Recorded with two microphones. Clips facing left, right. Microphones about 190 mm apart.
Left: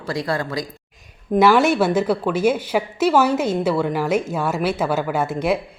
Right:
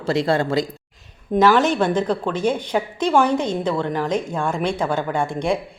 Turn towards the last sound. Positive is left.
turn(degrees=5)  # may be behind; listen again after turning